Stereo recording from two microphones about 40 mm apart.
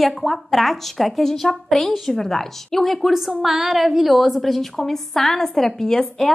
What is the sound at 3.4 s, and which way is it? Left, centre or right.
A woman's voice, centre.